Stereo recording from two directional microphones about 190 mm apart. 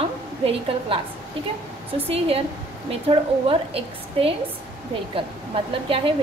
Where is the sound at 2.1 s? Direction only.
30° right (ahead or behind).